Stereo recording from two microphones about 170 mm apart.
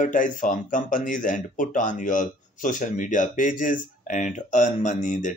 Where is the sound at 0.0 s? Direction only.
50° left (ahead or behind).